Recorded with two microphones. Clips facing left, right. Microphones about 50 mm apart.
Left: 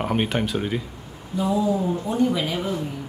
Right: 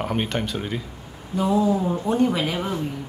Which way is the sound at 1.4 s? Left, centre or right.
Right.